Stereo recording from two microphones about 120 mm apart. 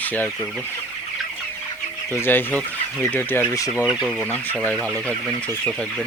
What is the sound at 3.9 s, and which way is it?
Speech, 5° right (ahead or behind).